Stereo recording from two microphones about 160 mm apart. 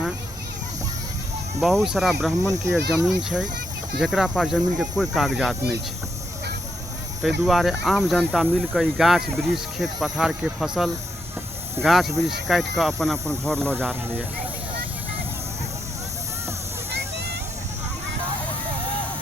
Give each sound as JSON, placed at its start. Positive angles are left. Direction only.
{"t": 1.6, "sound": "speech", "side_deg": 0}
{"t": 2.4, "sound": "speech", "side_deg": -20}
{"t": 3.2, "sound": "speech", "side_deg": -5}
{"t": 7.2, "sound": "speech", "side_deg": 0}
{"t": 16.9, "sound": "a sound", "side_deg": -90}